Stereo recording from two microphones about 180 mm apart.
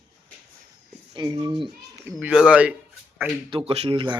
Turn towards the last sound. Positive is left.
turn(degrees=-25)  # may be behind; listen again after turning